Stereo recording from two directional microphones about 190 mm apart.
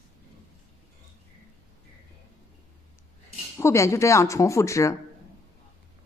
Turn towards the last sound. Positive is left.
turn(degrees=15)  # may be behind; listen again after turning